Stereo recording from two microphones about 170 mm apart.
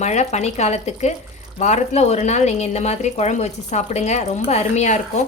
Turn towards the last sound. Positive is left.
turn(degrees=45)  # may be behind; listen again after turning